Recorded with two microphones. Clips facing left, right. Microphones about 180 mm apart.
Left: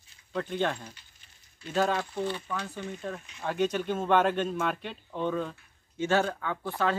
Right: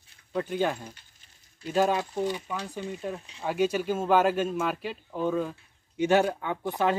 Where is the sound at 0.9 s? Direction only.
45° right (ahead or behind).